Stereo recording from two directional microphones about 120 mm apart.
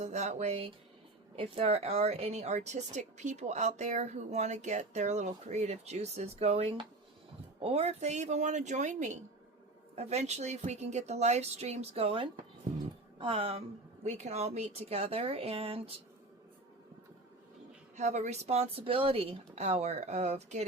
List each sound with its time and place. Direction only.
0.0 s a woman's voice: 75° right (ahead or behind); by 9.1 s 90° right
9.9 s speech: 65° right (ahead or behind)
14.0 s speech: 70° right (ahead or behind); by 15.9 s 55° right (ahead or behind)
17.9 s speech: 80° right; by 19.4 s 50° right (ahead or behind)
19.5 s a woman's voice: 65° right (ahead or behind)